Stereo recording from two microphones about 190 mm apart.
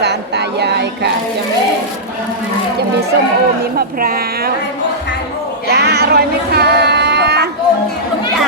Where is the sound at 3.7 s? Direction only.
50° right (ahead or behind).